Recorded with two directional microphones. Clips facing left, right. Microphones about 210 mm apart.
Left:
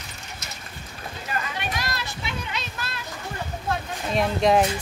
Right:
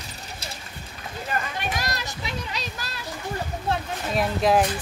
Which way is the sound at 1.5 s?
40° right (ahead or behind).